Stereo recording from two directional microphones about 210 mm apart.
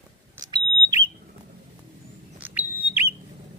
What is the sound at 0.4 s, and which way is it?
Smoke detector, 20° right (ahead or behind).